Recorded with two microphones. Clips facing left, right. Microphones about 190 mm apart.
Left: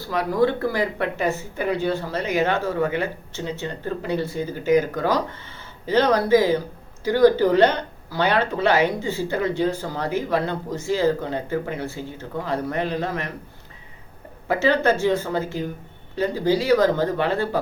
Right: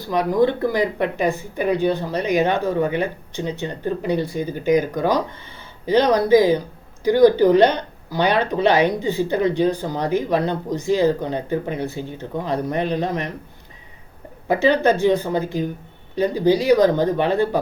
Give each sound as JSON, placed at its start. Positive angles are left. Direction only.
{"t": 0.1, "sound": "speech", "side_deg": -20}
{"t": 14.4, "sound": "speech", "side_deg": -15}